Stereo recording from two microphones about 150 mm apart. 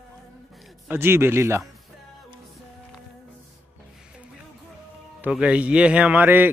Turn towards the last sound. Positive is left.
turn(degrees=-10)  # may be behind; listen again after turning